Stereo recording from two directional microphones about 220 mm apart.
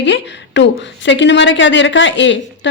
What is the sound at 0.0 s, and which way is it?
A woman's voice, 55° left (ahead or behind).